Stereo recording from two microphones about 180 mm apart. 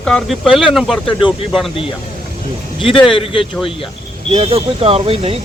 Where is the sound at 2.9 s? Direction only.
30° left (ahead or behind).